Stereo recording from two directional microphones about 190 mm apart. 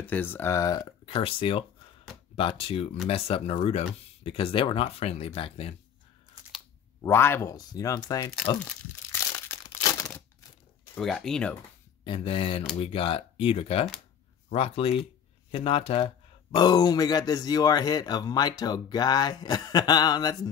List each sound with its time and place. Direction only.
0.0 s speech: 10° left (ahead or behind); by 5.8 s 30° left (ahead or behind)
7.0 s speech: 10° left (ahead or behind)
9.3 s crumpling: 20° left (ahead or behind)
11.0 s speech: centre (ahead or behind)
12.0 s speech: 25° left (ahead or behind)